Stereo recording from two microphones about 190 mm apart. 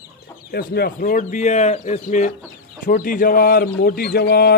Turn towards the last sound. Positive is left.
turn(degrees=55)  # may be behind; listen again after turning